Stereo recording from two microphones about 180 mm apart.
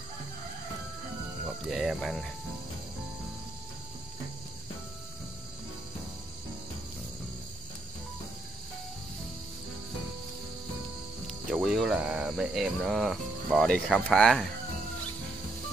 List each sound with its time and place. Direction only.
1.7 s speech: centre (ahead or behind)
11.2 s cricket: centre (ahead or behind)